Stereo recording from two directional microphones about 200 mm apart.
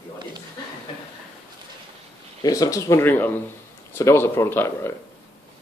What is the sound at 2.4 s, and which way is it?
Speech, 15° left (ahead or behind).